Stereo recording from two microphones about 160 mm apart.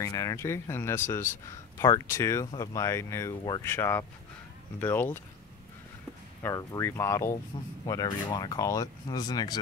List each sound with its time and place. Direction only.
0.0 s speech: 20° left (ahead or behind)
6.4 s speech: 20° left (ahead or behind)